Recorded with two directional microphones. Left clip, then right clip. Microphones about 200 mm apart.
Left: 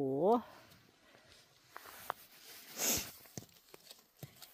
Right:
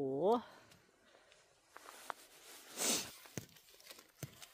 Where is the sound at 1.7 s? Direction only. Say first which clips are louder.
Left 4 dB; 50° left (ahead or behind).